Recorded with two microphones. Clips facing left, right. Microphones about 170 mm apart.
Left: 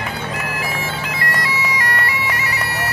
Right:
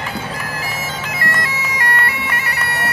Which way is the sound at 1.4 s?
50° right (ahead or behind).